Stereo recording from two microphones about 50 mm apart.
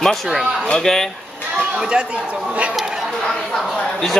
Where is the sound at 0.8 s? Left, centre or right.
Centre.